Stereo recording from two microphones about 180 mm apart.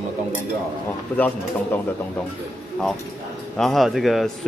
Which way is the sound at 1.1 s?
10° left (ahead or behind).